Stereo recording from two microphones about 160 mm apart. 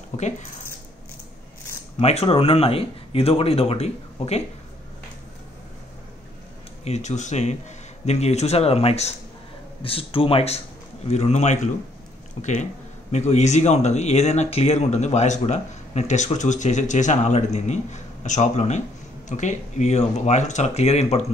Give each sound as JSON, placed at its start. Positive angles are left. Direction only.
{"t": 0.1, "sound": "speech", "side_deg": 45}
{"t": 2.0, "sound": "speech", "side_deg": 40}
{"t": 6.8, "sound": "speech", "side_deg": 45}